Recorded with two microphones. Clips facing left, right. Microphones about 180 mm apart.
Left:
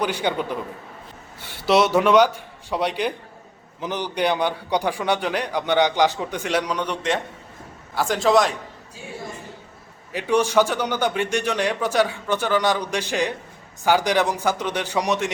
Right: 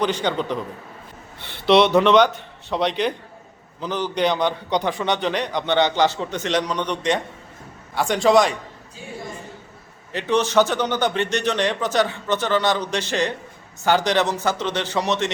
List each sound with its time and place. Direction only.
0.0 s a man's voice: 10° left (ahead or behind)
10.1 s a man's voice: 10° left (ahead or behind)